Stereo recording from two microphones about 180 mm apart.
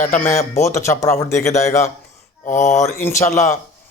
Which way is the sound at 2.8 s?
15° left (ahead or behind).